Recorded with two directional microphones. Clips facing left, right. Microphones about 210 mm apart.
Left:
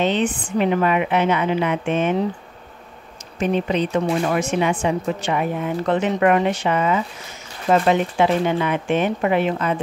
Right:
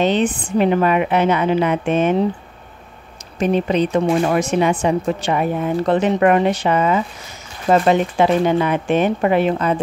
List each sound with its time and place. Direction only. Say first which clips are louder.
0.0 s speech: right 3 dB; 40° right (ahead or behind)
3.3 s speech: right 3 dB; 40° right (ahead or behind)